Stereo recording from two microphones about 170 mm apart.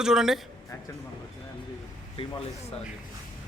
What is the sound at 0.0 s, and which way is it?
Speech, 5° right (ahead or behind).